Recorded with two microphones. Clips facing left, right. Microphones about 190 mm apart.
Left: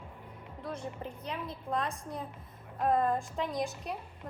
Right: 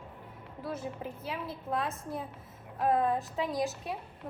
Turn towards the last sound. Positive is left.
turn(degrees=0)  # may be behind; listen again after turning